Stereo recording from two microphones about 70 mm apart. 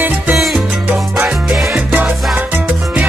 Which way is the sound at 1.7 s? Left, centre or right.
Right.